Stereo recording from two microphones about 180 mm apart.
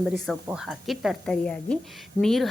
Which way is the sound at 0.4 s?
5° right (ahead or behind).